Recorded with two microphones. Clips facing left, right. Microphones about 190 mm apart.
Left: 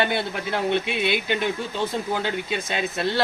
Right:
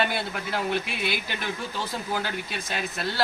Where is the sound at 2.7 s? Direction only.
25° left (ahead or behind).